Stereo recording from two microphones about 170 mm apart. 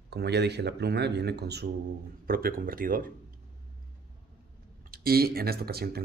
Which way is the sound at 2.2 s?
60° right (ahead or behind).